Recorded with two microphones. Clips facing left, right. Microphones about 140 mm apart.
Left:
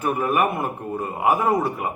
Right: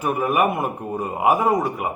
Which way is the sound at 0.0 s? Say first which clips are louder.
Right 1 dB; 10° right (ahead or behind).